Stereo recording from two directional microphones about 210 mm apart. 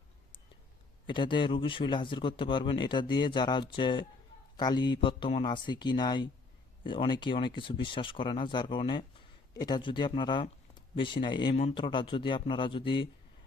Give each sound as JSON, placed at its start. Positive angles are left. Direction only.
{"t": 1.0, "sound": "speech", "side_deg": 25}